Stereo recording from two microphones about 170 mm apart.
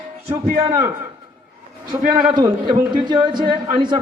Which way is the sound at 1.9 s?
20° right (ahead or behind).